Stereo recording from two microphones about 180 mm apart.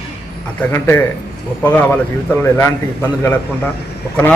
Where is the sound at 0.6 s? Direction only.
10° left (ahead or behind).